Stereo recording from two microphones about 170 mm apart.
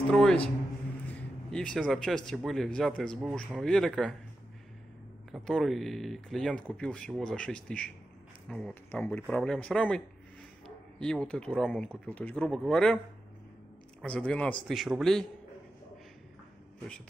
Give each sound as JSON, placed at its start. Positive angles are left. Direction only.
{"t": 0.1, "sound": "a sound", "side_deg": 5}
{"t": 1.0, "sound": "speech", "side_deg": 5}
{"t": 5.3, "sound": "speech", "side_deg": 0}
{"t": 14.0, "sound": "speech", "side_deg": 5}